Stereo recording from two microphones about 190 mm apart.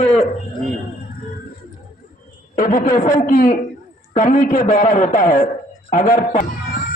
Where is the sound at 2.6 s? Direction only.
45° left (ahead or behind).